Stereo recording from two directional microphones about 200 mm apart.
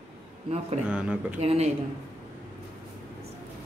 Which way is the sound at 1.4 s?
30° right (ahead or behind).